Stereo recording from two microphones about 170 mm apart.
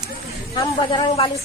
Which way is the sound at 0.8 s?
30° left (ahead or behind).